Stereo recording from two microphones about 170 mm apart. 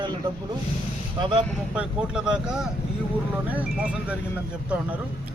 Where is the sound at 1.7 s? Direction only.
5° right (ahead or behind).